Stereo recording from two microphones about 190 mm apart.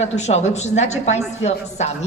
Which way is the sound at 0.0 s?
35° left (ahead or behind).